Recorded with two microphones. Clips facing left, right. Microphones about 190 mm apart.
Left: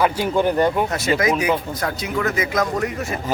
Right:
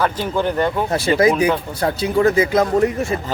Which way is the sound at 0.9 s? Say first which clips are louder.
Right 4 dB; 30° right (ahead or behind).